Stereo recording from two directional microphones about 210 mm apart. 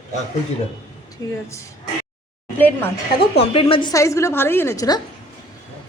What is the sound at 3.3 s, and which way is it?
A woman's voice, 25° left (ahead or behind).